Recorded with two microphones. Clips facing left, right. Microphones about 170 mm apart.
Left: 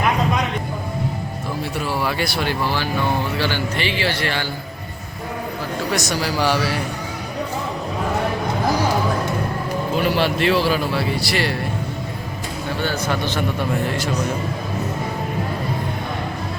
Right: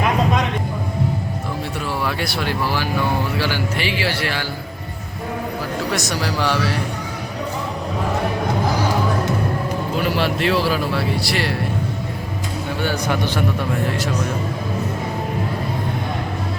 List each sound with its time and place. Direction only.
2.0 s a man's voice: centre (ahead or behind)
5.9 s speech: centre (ahead or behind)
10.1 s speech: centre (ahead or behind)
12.8 s a man's voice: 15° right (ahead or behind)
13.6 s speech: centre (ahead or behind)